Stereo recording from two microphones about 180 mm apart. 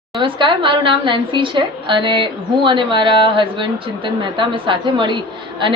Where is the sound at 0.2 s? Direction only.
25° right (ahead or behind).